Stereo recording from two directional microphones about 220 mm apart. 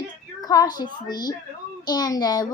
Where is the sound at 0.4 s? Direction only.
15° left (ahead or behind).